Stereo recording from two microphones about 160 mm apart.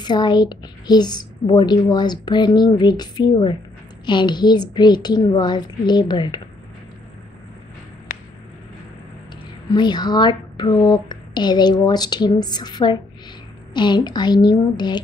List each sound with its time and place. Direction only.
0.0 s a woman's voice: 25° left (ahead or behind)
8.1 s a sound: 60° left (ahead or behind)
9.7 s a woman's voice: 25° left (ahead or behind)